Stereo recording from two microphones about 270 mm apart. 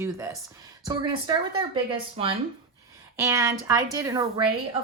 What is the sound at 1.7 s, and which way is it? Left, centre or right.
Speech, centre.